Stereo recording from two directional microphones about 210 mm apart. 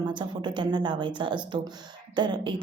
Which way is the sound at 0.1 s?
20° right (ahead or behind).